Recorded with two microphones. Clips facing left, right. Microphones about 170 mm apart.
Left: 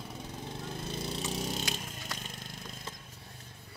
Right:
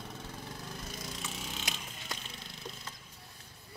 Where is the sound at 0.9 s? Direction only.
30° left (ahead or behind); by 2.5 s 45° left (ahead or behind).